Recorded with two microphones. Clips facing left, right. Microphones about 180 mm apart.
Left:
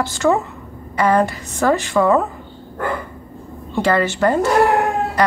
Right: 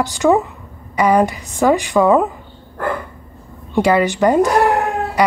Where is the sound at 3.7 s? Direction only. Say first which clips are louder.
Right 3 dB; 15° right (ahead or behind).